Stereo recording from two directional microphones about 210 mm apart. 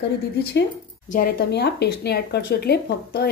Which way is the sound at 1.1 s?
45° left (ahead or behind).